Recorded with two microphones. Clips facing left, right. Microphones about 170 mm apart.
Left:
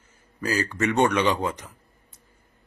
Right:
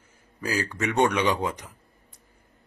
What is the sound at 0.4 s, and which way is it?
A man's voice, 10° right (ahead or behind).